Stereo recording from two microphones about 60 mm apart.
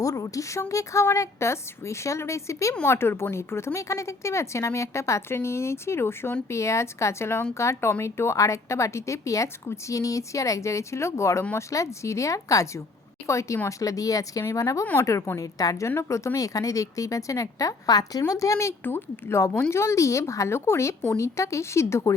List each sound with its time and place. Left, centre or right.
0.0 s a woman's voice: left
3.8 s a woman's voice: left
15.0 s a woman's voice: left
16.0 s speech: left
18.2 s speech: left
18.8 s speech: left
19.3 s a woman's voice: left